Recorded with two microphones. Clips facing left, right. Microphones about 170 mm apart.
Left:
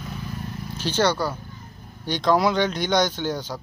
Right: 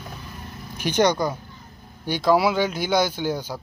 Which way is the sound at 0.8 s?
15° right (ahead or behind).